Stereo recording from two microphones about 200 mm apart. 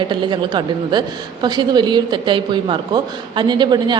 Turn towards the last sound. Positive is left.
turn(degrees=-20)  # may be behind; listen again after turning